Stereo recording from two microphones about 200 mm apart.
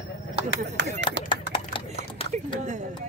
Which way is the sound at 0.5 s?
60° right (ahead or behind).